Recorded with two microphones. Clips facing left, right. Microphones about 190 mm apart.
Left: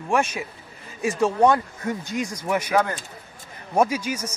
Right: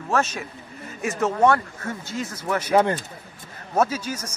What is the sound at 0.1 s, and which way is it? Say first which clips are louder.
A man's voice: left 1 dB; 10° left (ahead or behind).